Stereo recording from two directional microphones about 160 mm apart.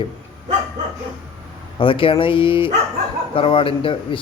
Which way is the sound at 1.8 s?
35° left (ahead or behind).